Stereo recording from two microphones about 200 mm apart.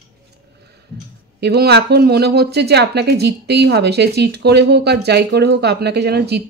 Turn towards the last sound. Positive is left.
turn(degrees=-55)  # may be behind; listen again after turning